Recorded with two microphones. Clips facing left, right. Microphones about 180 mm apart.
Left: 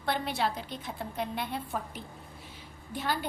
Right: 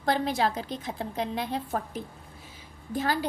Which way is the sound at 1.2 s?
90° right.